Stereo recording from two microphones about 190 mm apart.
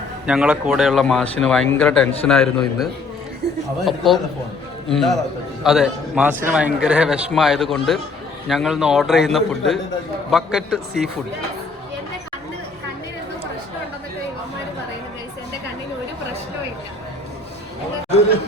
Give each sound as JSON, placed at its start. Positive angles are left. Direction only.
{"t": 0.3, "sound": "a man's voice", "side_deg": -5}
{"t": 3.4, "sound": "speech", "side_deg": -60}
{"t": 3.8, "sound": "a man's voice", "side_deg": 0}